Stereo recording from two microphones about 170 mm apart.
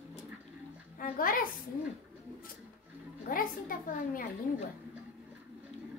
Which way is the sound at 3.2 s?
55° left (ahead or behind).